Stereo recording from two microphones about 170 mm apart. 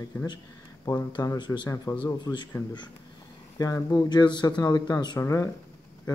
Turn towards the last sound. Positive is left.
turn(degrees=20)  # may be behind; listen again after turning